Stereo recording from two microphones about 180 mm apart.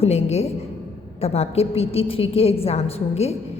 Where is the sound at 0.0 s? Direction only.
35° left (ahead or behind).